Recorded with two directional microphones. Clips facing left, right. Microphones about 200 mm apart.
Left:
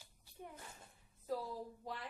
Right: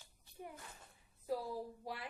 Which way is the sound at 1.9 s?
10° right (ahead or behind).